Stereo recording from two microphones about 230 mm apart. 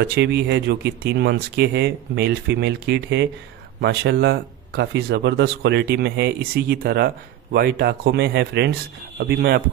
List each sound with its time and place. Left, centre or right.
0.0 s speech: right